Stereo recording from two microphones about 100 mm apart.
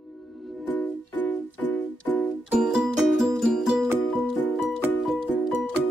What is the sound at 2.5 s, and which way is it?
Music, 5° right (ahead or behind).